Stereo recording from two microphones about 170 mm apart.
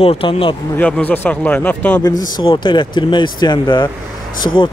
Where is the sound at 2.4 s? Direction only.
25° left (ahead or behind).